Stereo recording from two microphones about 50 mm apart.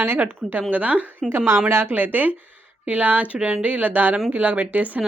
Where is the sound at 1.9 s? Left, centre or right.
Right.